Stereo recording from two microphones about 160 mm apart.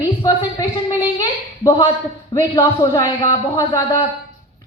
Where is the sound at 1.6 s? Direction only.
20° left (ahead or behind).